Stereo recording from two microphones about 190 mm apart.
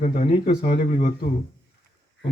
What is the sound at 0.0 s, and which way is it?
Speech, 30° left (ahead or behind).